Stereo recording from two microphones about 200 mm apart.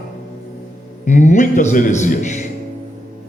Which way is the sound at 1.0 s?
40° left (ahead or behind).